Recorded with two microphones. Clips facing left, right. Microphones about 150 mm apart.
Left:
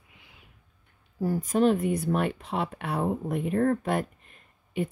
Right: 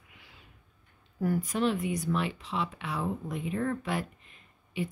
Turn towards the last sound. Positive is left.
turn(degrees=50)  # may be behind; listen again after turning